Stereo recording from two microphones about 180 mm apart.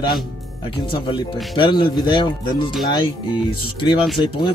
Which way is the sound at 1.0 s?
25° left (ahead or behind).